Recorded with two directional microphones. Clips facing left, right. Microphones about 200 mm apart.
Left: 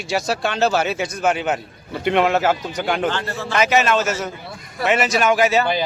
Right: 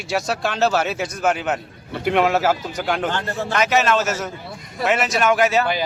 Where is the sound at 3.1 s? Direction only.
45° right (ahead or behind).